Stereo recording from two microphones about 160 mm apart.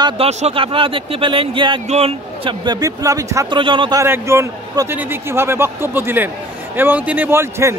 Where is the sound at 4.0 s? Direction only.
15° right (ahead or behind).